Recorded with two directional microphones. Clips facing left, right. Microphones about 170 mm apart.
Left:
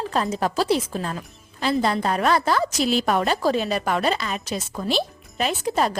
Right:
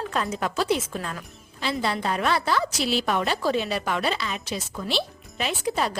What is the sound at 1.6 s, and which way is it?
A woman's voice, 45° left (ahead or behind).